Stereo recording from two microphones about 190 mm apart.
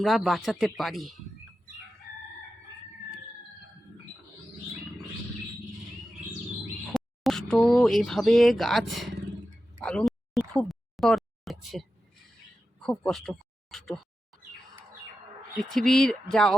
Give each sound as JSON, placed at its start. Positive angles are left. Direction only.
{"t": 0.0, "sound": "speech", "side_deg": 0}
{"t": 6.9, "sound": "speech", "side_deg": 0}
{"t": 9.8, "sound": "a sound", "side_deg": 5}
{"t": 15.7, "sound": "speech", "side_deg": 5}